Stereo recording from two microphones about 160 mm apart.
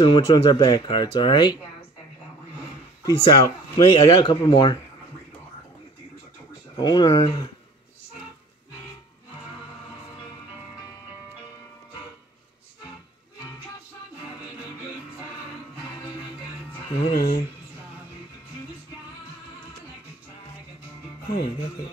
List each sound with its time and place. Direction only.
0.0 s speech: 30° left (ahead or behind)
0.8 s speech: 35° left (ahead or behind)
3.0 s speech: 25° left (ahead or behind)
6.8 s speech: 25° left (ahead or behind)
17.1 s speech: 65° left (ahead or behind)